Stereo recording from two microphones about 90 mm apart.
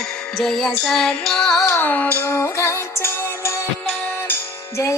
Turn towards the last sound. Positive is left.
turn(degrees=35)  # may be behind; listen again after turning